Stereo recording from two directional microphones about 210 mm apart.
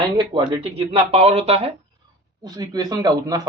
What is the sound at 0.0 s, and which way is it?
A man's voice, 20° right (ahead or behind).